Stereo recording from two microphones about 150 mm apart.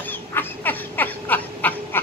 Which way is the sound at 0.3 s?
15° left (ahead or behind).